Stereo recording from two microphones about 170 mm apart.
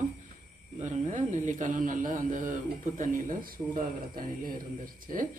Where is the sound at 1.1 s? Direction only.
50° right (ahead or behind).